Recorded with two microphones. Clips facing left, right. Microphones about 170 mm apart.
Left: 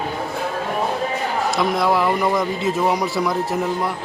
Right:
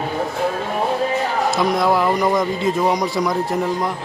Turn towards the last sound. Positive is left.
turn(degrees=5)  # may be behind; listen again after turning